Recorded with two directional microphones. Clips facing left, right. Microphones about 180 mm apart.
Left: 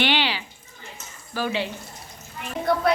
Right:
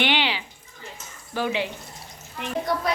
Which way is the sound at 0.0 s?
20° right (ahead or behind).